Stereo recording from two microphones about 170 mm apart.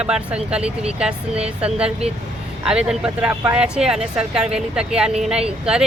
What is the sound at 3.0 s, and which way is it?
A woman's voice, 10° right (ahead or behind).